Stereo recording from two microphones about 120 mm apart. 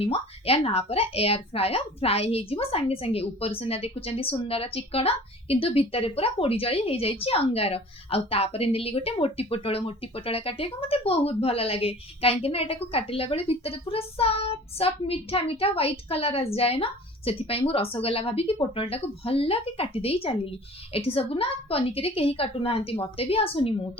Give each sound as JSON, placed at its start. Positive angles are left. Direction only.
{"t": 0.0, "sound": "speech", "side_deg": 55}